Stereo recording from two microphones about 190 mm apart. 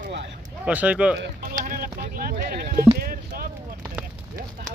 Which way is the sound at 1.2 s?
50° right (ahead or behind).